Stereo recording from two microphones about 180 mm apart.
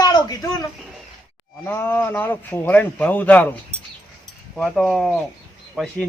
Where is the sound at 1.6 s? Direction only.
10° left (ahead or behind).